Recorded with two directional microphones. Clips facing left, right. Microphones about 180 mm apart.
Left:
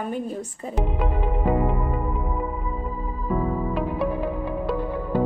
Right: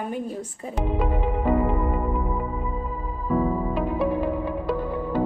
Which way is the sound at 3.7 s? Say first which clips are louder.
Right 1 dB; centre (ahead or behind).